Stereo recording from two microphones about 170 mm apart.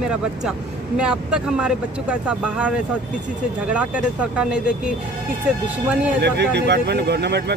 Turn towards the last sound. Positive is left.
turn(degrees=-75)  # may be behind; listen again after turning